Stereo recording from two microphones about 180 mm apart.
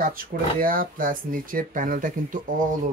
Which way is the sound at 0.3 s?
50° right (ahead or behind).